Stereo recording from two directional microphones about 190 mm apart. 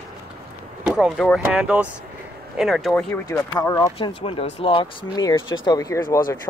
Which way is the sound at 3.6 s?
20° left (ahead or behind).